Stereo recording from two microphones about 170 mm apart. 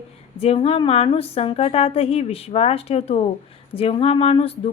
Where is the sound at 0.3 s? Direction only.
35° left (ahead or behind).